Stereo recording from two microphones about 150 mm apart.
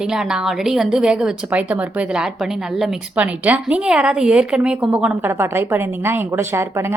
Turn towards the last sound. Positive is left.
turn(degrees=-15)  # may be behind; listen again after turning